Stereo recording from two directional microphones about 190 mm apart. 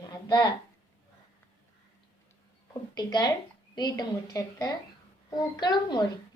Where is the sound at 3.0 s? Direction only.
20° left (ahead or behind).